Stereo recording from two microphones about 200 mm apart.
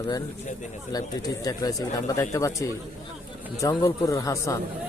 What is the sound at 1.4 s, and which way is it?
Speech, 20° left (ahead or behind).